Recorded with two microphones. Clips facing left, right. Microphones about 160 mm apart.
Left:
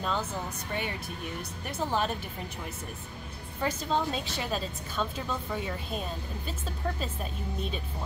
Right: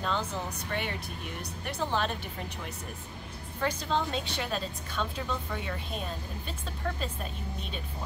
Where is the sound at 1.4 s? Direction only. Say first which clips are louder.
Right 1 dB; 5° left (ahead or behind).